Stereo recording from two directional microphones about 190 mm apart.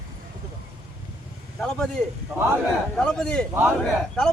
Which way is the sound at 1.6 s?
5° left (ahead or behind).